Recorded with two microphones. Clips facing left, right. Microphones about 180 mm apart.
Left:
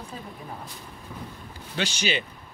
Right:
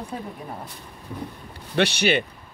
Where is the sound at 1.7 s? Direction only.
65° right (ahead or behind).